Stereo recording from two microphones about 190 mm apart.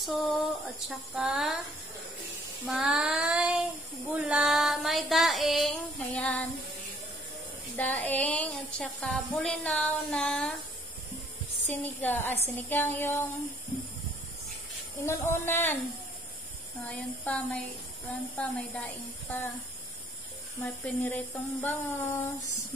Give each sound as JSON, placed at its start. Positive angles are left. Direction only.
{"t": 0.0, "sound": "a sound", "side_deg": 0}
{"t": 2.6, "sound": "child singing", "side_deg": 0}
{"t": 7.7, "sound": "a sound", "side_deg": 10}
{"t": 11.7, "sound": "speech", "side_deg": 10}
{"t": 15.0, "sound": "speech", "side_deg": 10}
{"t": 16.8, "sound": "speech", "side_deg": 10}
{"t": 20.6, "sound": "speech", "side_deg": 10}